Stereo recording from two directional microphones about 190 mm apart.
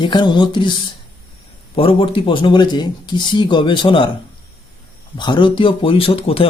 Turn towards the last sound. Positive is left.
turn(degrees=30)  # may be behind; listen again after turning